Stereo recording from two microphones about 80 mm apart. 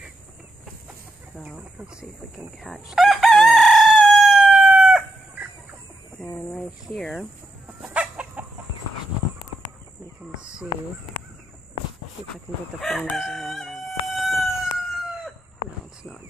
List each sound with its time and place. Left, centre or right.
1.3 s speech: centre
1.6 s speech: centre
2.9 s crowing: centre
6.1 s speech: centre
7.9 s chicken: centre
12.8 s crowing: centre
14.1 s chicken: centre